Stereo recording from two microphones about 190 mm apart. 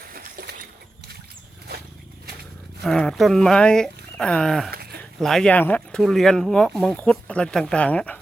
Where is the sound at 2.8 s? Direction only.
Centre (ahead or behind).